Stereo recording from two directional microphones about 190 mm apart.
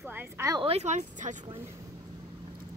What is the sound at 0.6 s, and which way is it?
Speech, 35° right (ahead or behind).